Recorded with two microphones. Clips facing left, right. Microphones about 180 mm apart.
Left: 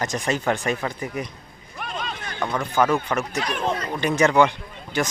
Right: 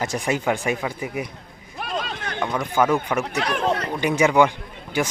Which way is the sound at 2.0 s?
75° right (ahead or behind).